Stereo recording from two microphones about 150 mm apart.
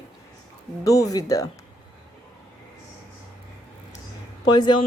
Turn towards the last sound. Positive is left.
turn(degrees=30)  # may be behind; listen again after turning